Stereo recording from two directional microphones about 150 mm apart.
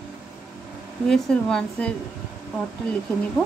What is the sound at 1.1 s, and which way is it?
Speech, 5° left (ahead or behind).